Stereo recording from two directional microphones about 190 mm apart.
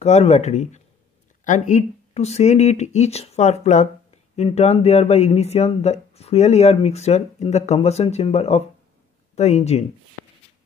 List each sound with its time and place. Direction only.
0.0 s speech: 35° left (ahead or behind)